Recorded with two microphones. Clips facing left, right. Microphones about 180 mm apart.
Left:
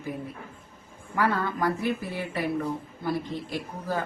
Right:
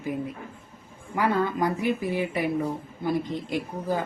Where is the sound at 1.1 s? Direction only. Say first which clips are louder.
Right 2 dB; 15° right (ahead or behind).